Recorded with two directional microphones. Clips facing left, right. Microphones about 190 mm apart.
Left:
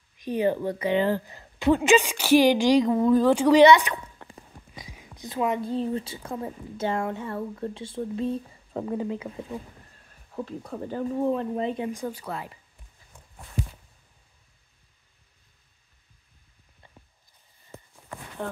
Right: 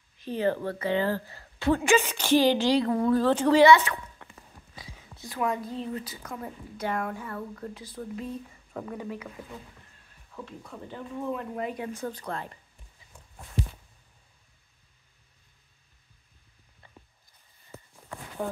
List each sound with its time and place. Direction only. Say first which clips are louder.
0.2 s a woman's voice: left 3 dB; 15° left (ahead or behind)
4.2 s walk: left 4 dB; 35° left (ahead or behind)
4.7 s speech: left 2 dB; 15° left (ahead or behind)
10.3 s speech: left 8 dB; 40° left (ahead or behind)
11.9 s a woman's voice: left 2 dB; 10° left (ahead or behind)
18.4 s speech: right 1 dB; 5° right (ahead or behind)